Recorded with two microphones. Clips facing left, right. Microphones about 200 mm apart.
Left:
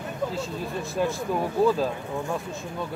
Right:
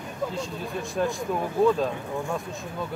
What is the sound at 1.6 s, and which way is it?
Speech, 5° left (ahead or behind).